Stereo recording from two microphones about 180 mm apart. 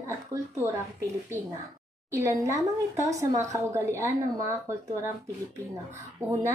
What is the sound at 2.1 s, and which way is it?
A woman's voice, 15° right (ahead or behind).